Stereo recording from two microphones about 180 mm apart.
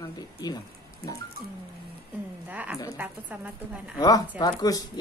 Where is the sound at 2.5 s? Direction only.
10° right (ahead or behind).